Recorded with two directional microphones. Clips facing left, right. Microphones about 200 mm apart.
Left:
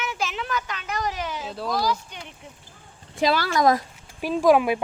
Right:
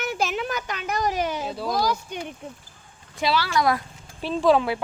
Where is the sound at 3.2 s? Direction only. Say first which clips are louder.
Left 2 dB; 45° left (ahead or behind).